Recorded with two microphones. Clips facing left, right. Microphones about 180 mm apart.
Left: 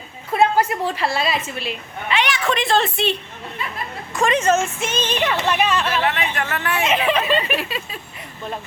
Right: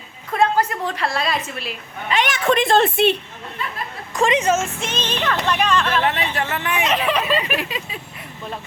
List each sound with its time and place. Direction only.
0.3 s a woman's voice: 10° left (ahead or behind)
2.0 s a woman's voice: 45° right (ahead or behind)
4.3 s a sound: 15° right (ahead or behind)
4.6 s speech: 5° left (ahead or behind)
6.3 s speech: 25° right (ahead or behind)
6.8 s speech: centre (ahead or behind)
7.5 s a sound: 15° right (ahead or behind)